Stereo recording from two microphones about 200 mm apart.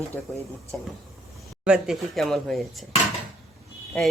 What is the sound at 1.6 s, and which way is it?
A man's voice, 5° right (ahead or behind).